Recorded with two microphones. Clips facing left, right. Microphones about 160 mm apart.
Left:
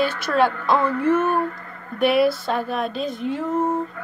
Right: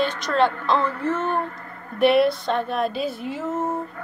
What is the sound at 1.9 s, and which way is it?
Speech, centre (ahead or behind).